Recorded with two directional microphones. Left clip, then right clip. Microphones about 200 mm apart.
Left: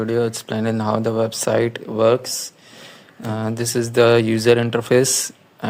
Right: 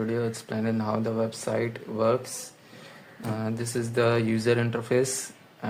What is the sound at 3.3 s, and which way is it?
Speech, 35° left (ahead or behind).